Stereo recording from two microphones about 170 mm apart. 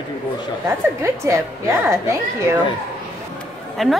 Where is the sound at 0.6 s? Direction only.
15° right (ahead or behind).